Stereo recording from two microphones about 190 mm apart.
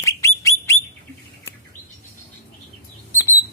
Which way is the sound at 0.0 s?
15° left (ahead or behind).